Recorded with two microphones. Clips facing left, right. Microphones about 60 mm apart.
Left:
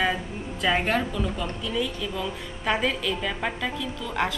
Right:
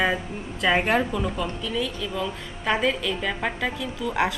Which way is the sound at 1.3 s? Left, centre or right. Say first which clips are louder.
Right 1 dB; centre.